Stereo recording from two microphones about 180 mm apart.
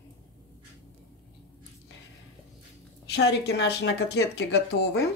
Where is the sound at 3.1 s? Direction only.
65° left (ahead or behind).